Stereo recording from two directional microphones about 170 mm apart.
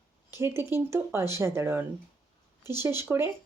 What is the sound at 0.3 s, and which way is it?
Speech, 15° right (ahead or behind).